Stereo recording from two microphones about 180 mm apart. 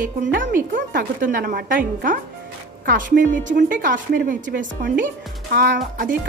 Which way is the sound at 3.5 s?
50° right (ahead or behind).